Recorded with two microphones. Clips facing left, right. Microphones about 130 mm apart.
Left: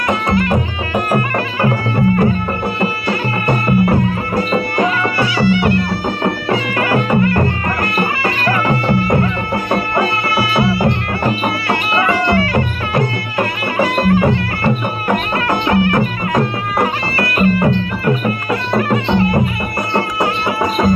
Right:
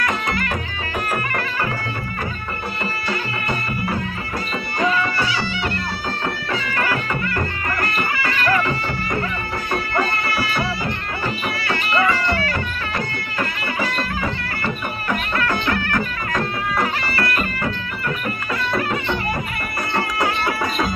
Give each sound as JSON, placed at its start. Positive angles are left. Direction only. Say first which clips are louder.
{"t": 1.1, "sound": "music", "louder": "left 7 dB", "side_deg": 35}
{"t": 10.2, "sound": "music", "louder": "left 7 dB", "side_deg": 45}
{"t": 15.3, "sound": "music", "louder": "left 6 dB", "side_deg": 35}
{"t": 18.9, "sound": "music", "louder": "left 8 dB", "side_deg": 55}
{"t": 20.2, "sound": "music", "louder": "left 5 dB", "side_deg": 20}